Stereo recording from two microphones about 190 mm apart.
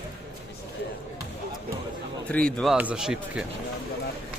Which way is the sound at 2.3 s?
5° left (ahead or behind).